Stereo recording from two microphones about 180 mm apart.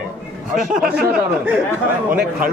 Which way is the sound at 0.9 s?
5° right (ahead or behind).